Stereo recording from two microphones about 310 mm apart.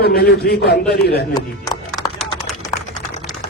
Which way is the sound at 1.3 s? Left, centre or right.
Centre.